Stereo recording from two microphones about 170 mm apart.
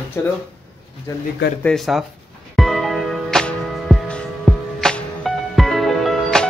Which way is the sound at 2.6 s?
Centre (ahead or behind).